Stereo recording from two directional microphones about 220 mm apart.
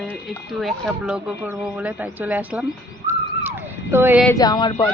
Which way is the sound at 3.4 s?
10° right (ahead or behind).